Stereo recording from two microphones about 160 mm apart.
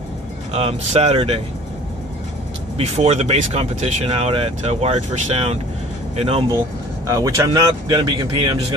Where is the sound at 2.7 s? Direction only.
40° right (ahead or behind).